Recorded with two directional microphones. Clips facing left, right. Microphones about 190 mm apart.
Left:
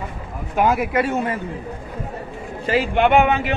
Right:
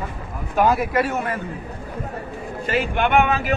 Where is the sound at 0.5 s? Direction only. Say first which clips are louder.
Even; 10° left (ahead or behind).